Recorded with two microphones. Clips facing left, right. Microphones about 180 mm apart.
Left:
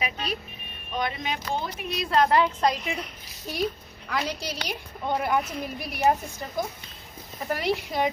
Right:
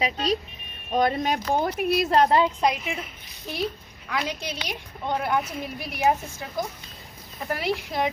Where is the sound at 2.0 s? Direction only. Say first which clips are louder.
Even; 40° right (ahead or behind).